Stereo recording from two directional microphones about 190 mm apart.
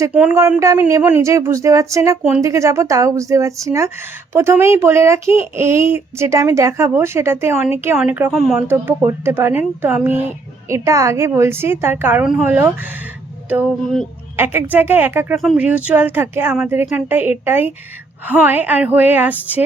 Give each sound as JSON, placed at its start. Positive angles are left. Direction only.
{"t": 0.0, "sound": "speech", "side_deg": -5}
{"t": 8.6, "sound": "speech", "side_deg": -10}
{"t": 13.5, "sound": "a sound", "side_deg": -5}
{"t": 14.3, "sound": "speech", "side_deg": -10}